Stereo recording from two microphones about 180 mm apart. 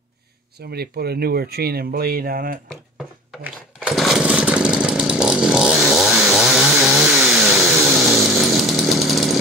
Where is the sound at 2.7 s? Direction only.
Centre (ahead or behind).